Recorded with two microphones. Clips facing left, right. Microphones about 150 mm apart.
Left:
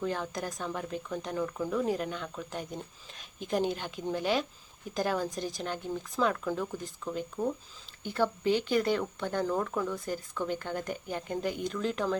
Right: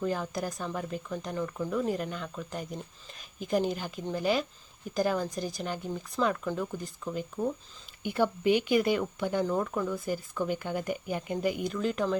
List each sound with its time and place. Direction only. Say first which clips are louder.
0.0 s speech: right 2 dB; 5° right (ahead or behind)
8.0 s speech: right 2 dB; 15° right (ahead or behind)